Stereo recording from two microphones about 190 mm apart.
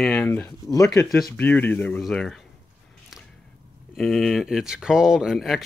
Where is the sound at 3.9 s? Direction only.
Centre (ahead or behind).